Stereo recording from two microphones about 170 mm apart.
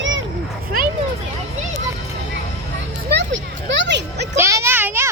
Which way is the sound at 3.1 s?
90° right.